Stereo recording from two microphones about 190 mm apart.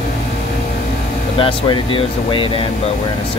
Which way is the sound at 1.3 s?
25° left (ahead or behind).